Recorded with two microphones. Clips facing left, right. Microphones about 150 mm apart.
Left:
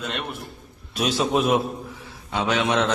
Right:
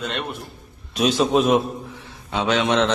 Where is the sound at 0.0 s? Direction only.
Centre (ahead or behind).